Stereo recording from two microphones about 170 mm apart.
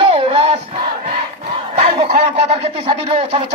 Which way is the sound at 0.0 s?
30° right (ahead or behind).